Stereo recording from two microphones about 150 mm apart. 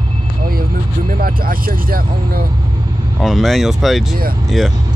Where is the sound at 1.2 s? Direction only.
75° right (ahead or behind).